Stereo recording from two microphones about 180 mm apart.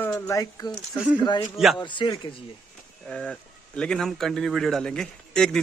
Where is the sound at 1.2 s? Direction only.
20° left (ahead or behind).